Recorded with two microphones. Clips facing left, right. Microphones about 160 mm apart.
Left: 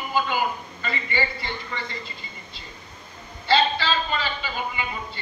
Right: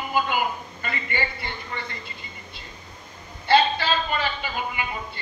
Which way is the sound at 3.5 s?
55° right (ahead or behind).